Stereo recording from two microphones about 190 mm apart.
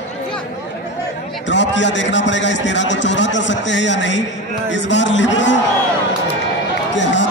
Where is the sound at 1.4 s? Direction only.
70° left (ahead or behind).